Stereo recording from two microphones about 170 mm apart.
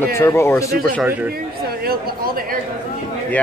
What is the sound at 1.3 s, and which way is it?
Chatter, 60° right (ahead or behind).